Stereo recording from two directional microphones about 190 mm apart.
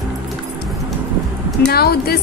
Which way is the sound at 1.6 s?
55° left (ahead or behind).